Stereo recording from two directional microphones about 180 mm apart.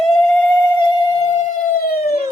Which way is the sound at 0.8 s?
25° left (ahead or behind).